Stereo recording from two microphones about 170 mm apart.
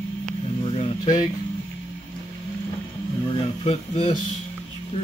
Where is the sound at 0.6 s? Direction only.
35° left (ahead or behind).